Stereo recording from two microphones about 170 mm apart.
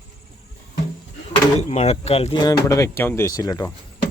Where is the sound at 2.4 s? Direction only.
20° left (ahead or behind).